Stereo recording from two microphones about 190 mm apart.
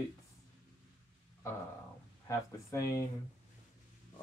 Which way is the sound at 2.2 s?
15° left (ahead or behind).